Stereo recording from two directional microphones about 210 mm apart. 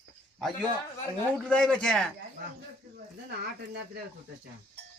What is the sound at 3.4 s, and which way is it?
Speech, 50° right (ahead or behind).